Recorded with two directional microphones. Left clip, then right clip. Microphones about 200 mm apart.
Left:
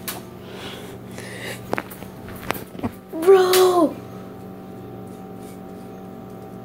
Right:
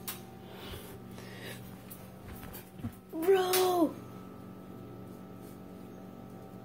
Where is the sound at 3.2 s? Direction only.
5° left (ahead or behind).